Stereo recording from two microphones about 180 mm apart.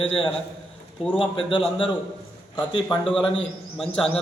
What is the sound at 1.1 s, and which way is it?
Speech, 30° left (ahead or behind).